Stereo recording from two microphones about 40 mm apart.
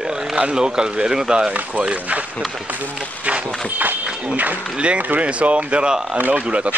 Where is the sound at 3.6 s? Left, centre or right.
Right.